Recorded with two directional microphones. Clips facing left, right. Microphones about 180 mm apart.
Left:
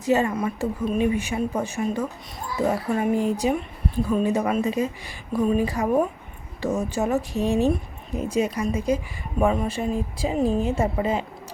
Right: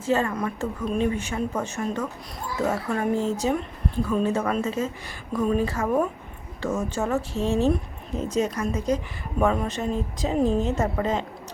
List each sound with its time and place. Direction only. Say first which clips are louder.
0.0 s speech: left 2 dB; 15° left (ahead or behind)
0.3 s speech: left 3 dB; 5° left (ahead or behind)